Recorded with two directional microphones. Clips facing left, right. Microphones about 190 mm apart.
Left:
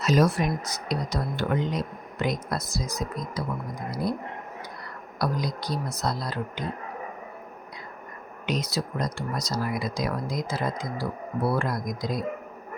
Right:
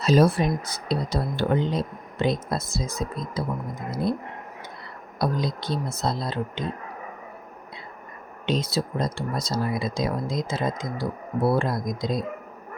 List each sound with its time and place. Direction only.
0.0 s speech: 30° right (ahead or behind)
5.2 s speech: 25° right (ahead or behind)
8.4 s speech: 30° right (ahead or behind)